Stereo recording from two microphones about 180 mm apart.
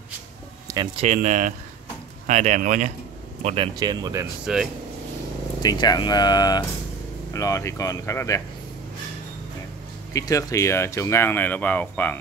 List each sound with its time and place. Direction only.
0.9 s speech: 40° right (ahead or behind)
3.4 s speech: 30° right (ahead or behind)
5.6 s speech: 20° left (ahead or behind)
10.1 s speech: 20° left (ahead or behind)